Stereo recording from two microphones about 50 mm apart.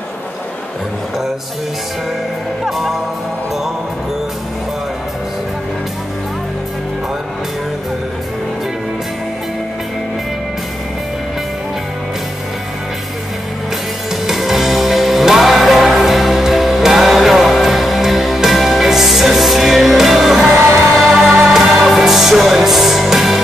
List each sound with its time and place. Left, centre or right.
14.2 s music: centre